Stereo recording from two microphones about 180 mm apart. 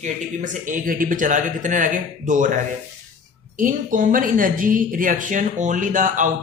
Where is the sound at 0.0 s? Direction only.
45° right (ahead or behind).